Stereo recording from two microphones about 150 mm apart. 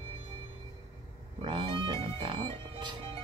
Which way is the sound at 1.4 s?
35° right (ahead or behind).